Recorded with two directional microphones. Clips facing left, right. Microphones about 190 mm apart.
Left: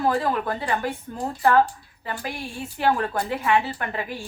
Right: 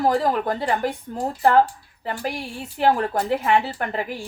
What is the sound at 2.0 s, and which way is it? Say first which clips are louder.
Speech: right 4 dB; 35° right (ahead or behind).